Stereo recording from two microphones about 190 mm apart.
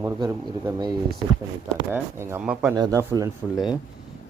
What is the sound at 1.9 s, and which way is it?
Speech, 10° right (ahead or behind).